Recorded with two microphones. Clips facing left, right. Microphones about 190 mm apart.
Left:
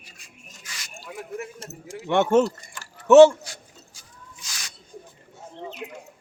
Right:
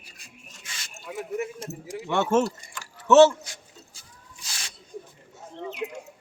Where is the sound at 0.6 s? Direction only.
25° right (ahead or behind).